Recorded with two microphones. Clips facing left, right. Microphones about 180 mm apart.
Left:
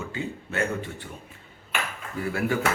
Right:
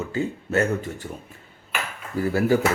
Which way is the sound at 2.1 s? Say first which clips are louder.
Right 6 dB; 35° right (ahead or behind).